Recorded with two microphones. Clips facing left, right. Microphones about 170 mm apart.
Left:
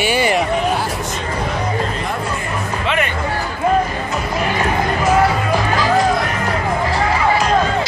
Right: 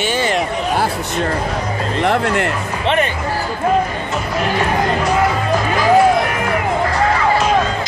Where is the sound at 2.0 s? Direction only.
80° right.